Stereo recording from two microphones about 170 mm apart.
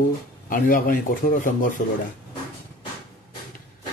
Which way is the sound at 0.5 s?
55° left (ahead or behind).